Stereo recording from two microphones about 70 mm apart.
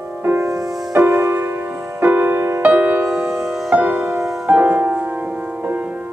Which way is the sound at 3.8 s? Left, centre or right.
Right.